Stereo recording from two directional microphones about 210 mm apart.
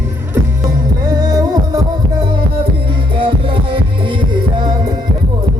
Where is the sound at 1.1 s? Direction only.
20° right (ahead or behind).